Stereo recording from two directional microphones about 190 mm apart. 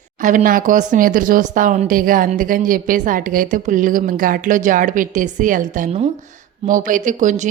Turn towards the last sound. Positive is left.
turn(degrees=-40)  # may be behind; listen again after turning